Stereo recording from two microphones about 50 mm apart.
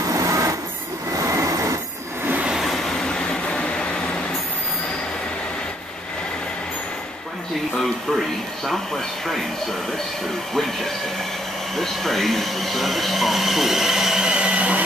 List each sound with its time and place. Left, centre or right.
0.1 s train: right
2.6 s train: centre
3.1 s vehicle: centre
7.8 s speech: centre
11.7 s speech: centre; by 14.8 s right